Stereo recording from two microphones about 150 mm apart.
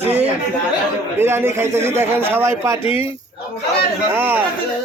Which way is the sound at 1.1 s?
15° right (ahead or behind).